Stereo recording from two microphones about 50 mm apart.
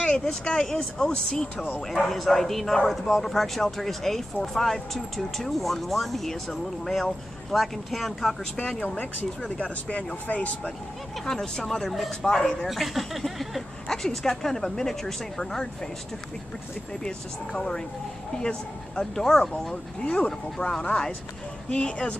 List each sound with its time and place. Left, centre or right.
0.0 s speech: centre
2.0 s a man's voice: centre
9.6 s speech: left
11.2 s a man's voice: centre
12.3 s speech: centre
12.6 s speech: centre
17.6 s speech: centre